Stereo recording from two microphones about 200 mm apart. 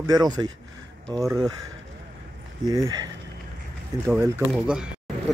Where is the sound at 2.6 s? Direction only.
20° right (ahead or behind).